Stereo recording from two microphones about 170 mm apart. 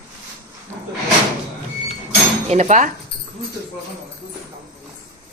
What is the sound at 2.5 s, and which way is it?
Speech, 40° right (ahead or behind).